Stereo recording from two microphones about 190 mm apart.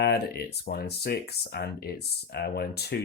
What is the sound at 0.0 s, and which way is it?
Speech, 55° left (ahead or behind).